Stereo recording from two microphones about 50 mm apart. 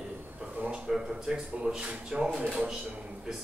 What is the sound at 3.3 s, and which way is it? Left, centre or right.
Speech, centre.